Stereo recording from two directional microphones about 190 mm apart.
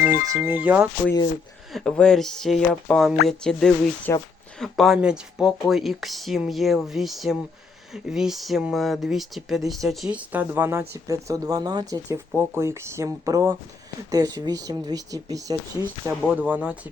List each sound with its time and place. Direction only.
0.0 s music: 50° left (ahead or behind)
0.3 s speech: 15° right (ahead or behind)
1.7 s speech: 5° left (ahead or behind)